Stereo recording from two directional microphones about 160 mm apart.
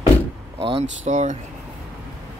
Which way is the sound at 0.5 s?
35° right (ahead or behind).